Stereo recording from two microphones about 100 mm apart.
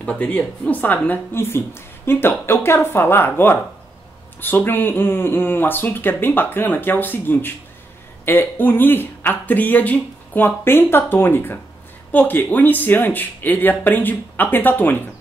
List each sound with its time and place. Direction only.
0.0 s speech: 15° left (ahead or behind)